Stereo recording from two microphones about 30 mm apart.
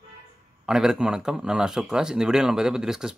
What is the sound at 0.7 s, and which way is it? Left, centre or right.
A man's voice, centre.